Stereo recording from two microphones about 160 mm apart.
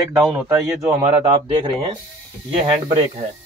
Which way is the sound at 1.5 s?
35° right (ahead or behind).